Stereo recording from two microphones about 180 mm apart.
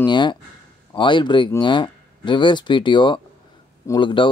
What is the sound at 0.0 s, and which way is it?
Speech, 25° left (ahead or behind).